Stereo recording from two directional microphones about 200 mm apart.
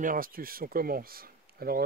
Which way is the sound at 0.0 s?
45° right (ahead or behind).